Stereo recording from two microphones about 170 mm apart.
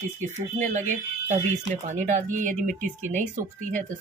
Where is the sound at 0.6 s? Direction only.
45° right (ahead or behind).